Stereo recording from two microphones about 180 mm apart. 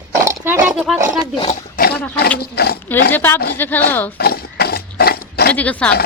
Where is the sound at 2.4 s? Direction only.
60° left (ahead or behind).